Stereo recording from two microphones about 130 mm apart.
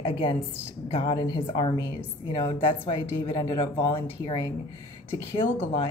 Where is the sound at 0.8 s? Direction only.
45° left (ahead or behind).